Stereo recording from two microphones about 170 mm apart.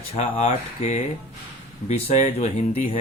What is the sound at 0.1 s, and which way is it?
Speech, 35° left (ahead or behind).